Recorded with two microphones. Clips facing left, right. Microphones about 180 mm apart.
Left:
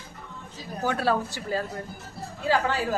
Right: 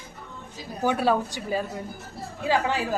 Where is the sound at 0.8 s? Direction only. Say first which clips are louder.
Right 2 dB; 15° right (ahead or behind).